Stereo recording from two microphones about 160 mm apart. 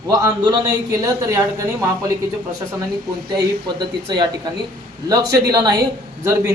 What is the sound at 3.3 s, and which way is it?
A man's voice, 25° right (ahead or behind).